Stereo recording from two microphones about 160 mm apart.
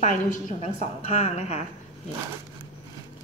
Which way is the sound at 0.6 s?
45° left (ahead or behind).